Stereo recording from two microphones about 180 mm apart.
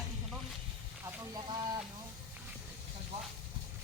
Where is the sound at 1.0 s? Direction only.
25° right (ahead or behind).